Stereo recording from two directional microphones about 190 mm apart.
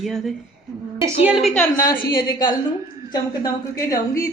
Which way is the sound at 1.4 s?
35° left (ahead or behind).